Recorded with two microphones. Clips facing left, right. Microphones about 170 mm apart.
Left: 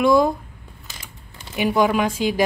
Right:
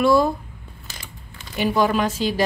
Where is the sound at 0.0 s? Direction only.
15° left (ahead or behind).